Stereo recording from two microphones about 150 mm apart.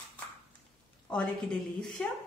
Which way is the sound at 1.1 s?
5° left (ahead or behind).